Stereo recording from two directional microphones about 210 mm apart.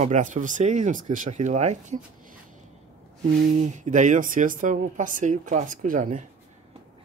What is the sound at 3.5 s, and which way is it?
Speech, 35° right (ahead or behind).